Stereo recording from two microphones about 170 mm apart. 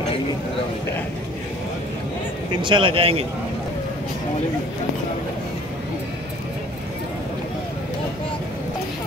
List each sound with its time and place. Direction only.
2.6 s a man's voice: 30° right (ahead or behind)